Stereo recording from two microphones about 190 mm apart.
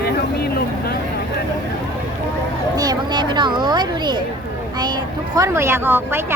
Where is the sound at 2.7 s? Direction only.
20° right (ahead or behind).